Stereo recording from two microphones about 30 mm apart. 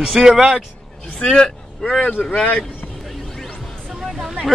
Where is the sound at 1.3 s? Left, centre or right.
Centre.